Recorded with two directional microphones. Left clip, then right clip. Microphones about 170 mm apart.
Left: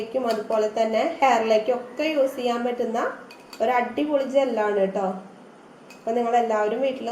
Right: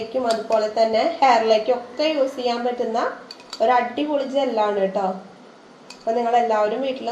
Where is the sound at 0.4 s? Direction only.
5° right (ahead or behind).